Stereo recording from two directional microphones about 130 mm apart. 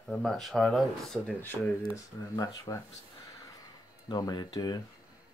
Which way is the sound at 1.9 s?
25° left (ahead or behind).